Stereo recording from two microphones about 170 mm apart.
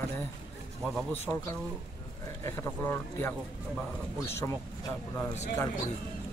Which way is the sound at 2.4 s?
15° left (ahead or behind).